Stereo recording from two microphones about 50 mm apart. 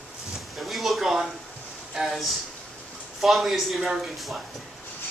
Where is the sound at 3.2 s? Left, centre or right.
Centre.